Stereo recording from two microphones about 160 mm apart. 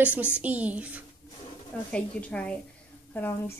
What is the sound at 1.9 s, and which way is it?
Speech, 5° left (ahead or behind).